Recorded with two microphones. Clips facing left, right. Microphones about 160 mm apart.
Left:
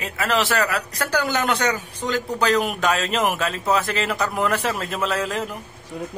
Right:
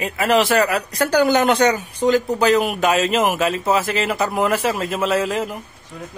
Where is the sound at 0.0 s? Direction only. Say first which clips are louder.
Right 5 dB; 15° right (ahead or behind).